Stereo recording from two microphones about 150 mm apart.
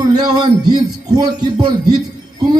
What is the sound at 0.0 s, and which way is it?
Music, 30° right (ahead or behind).